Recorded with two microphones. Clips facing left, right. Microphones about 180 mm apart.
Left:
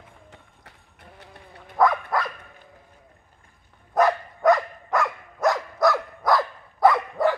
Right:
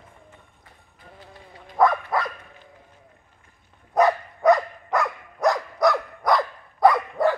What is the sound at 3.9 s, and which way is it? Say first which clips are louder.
Dog: right 1 dB; centre (ahead or behind).